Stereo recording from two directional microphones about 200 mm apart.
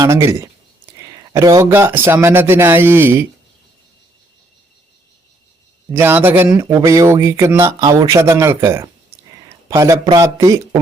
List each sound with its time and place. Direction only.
0.3 s speech: 15° right (ahead or behind)
5.9 s speech: 10° right (ahead or behind)